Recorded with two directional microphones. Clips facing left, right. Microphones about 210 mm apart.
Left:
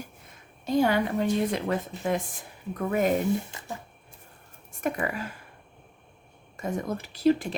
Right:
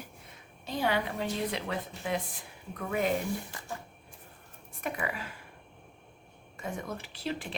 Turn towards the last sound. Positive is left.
turn(degrees=40)  # may be behind; listen again after turning